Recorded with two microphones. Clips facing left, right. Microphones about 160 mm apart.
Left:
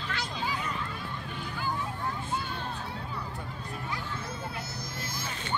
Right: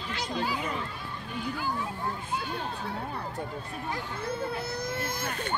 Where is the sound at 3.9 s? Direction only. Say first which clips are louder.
Right 6 dB; 60° right (ahead or behind).